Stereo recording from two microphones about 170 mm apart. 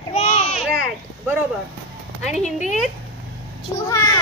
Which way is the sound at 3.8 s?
20° left (ahead or behind).